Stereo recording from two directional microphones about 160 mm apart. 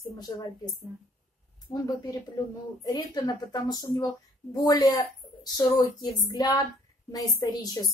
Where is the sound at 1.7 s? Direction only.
20° left (ahead or behind).